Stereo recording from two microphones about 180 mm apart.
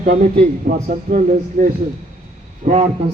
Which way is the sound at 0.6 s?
45° right (ahead or behind).